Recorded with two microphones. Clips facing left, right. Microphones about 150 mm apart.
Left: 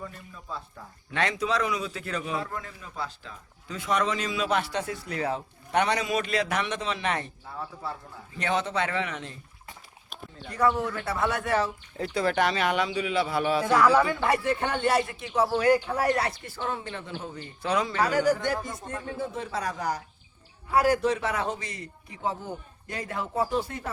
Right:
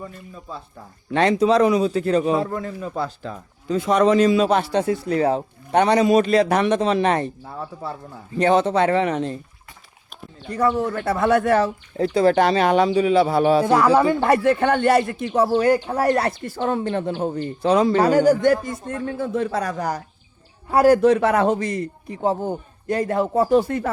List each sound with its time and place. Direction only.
1.1 s a man's voice: 30° right (ahead or behind)
3.7 s a man's voice: 35° right (ahead or behind)
8.4 s a man's voice: 35° right (ahead or behind)
10.6 s speech: 40° right (ahead or behind)
11.9 s a man's voice: 30° right (ahead or behind)
14.2 s speech: 55° right (ahead or behind)
15.5 s a man's voice: 30° right (ahead or behind); by 17.5 s 55° right (ahead or behind)
17.6 s a man's voice: 30° right (ahead or behind)
18.4 s speech: 55° right (ahead or behind)
18.9 s a man's voice: 70° right (ahead or behind); by 21.0 s 40° right (ahead or behind)
21.0 s a man's voice: 60° right (ahead or behind); by 23.5 s 40° right (ahead or behind)
23.5 s a man's voice: 55° right (ahead or behind)